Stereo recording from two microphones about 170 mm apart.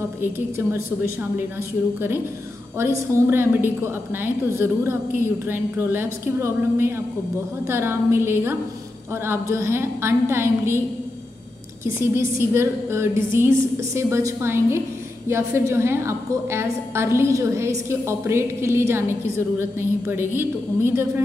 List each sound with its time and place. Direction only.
0.2 s a woman's voice: 15° right (ahead or behind)
2.8 s a woman's voice: 15° right (ahead or behind)
11.8 s a woman's voice: 15° right (ahead or behind)